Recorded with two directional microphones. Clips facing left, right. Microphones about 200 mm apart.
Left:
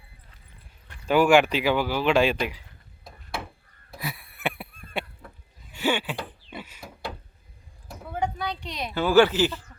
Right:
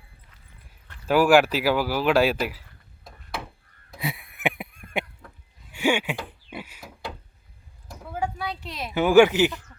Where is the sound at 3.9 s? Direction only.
25° right (ahead or behind).